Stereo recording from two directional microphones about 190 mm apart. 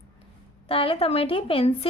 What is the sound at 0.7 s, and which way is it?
A woman's voice, 30° left (ahead or behind).